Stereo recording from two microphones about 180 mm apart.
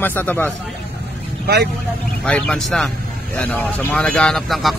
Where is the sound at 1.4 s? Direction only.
60° right (ahead or behind).